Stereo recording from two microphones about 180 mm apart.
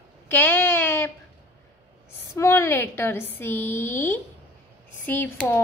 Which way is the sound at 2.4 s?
15° left (ahead or behind).